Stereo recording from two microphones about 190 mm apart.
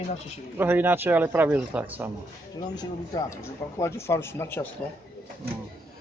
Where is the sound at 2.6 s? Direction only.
20° left (ahead or behind).